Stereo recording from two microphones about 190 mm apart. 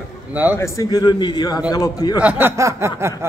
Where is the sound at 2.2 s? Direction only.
10° right (ahead or behind).